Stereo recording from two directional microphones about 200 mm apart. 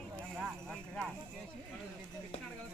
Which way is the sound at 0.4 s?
Centre (ahead or behind).